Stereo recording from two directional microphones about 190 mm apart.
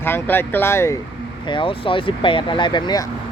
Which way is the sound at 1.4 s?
25° left (ahead or behind).